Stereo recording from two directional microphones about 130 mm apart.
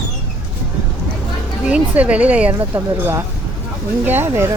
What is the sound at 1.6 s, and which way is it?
Speech, 10° right (ahead or behind).